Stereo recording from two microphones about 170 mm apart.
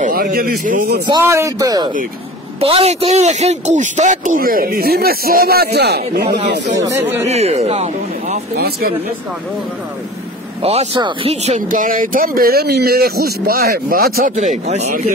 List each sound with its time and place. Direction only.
0.0 s a man's voice: 55° right (ahead or behind)
1.0 s speech: 20° right (ahead or behind)
2.6 s speech: 35° right (ahead or behind); by 6.6 s 70° right (ahead or behind)
6.8 s speech: 15° right (ahead or behind)
7.2 s speech: 40° right (ahead or behind)
8.5 s speech: 65° right (ahead or behind)
10.6 s speech: 35° right (ahead or behind)
11.4 s speech: 45° right (ahead or behind)
14.3 s speech: 45° right (ahead or behind)